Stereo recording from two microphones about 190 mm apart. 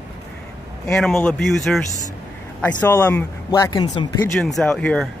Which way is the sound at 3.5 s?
20° left (ahead or behind).